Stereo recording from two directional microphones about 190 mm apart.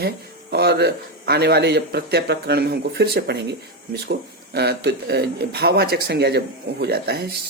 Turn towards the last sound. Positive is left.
turn(degrees=-55)  # may be behind; listen again after turning